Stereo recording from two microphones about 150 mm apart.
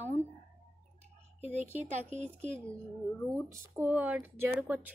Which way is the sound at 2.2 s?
10° left (ahead or behind).